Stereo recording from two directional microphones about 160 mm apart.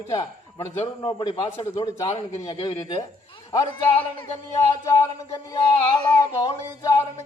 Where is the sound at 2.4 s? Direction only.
25° left (ahead or behind).